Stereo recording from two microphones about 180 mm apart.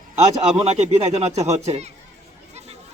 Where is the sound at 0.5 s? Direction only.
35° right (ahead or behind).